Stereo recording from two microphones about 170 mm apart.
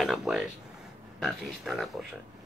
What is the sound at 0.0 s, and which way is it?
A man's voice, centre (ahead or behind).